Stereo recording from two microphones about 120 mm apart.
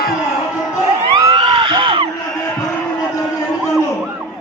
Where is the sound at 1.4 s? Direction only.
50° right (ahead or behind).